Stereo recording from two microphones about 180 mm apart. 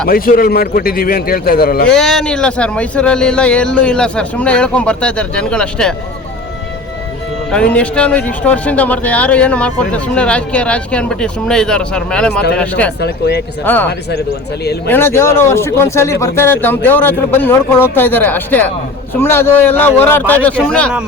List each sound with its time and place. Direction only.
0.1 s a man's voice: 55° left (ahead or behind)
1.9 s speech: 5° left (ahead or behind)
7.5 s speech: 5° left (ahead or behind)
13.0 s a man's voice: 65° left (ahead or behind)
13.7 s speech: 10° left (ahead or behind)
14.8 s speech: 15° left (ahead or behind)